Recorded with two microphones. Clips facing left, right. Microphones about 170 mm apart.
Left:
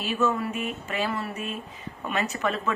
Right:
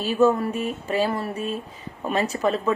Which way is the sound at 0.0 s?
35° right (ahead or behind).